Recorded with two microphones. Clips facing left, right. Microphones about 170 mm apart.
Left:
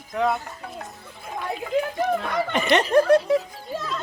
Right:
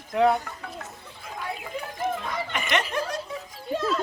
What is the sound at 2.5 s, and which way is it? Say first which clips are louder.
Speech: left 10 dB; 35° left (ahead or behind).